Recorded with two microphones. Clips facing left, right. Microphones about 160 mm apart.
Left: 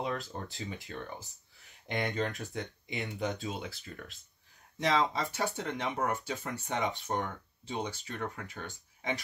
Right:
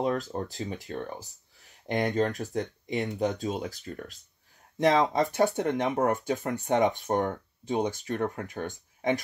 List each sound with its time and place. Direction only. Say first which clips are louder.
0.0 s speech: right 7 dB; 40° right (ahead or behind)